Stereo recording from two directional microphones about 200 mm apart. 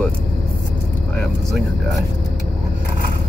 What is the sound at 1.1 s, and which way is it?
Speech, centre (ahead or behind).